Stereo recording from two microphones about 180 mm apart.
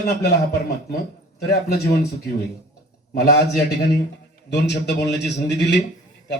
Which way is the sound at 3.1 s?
65° left (ahead or behind).